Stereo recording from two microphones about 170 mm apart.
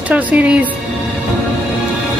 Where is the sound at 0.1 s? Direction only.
10° right (ahead or behind).